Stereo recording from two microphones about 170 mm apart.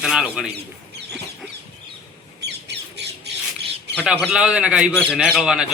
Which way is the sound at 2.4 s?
80° right.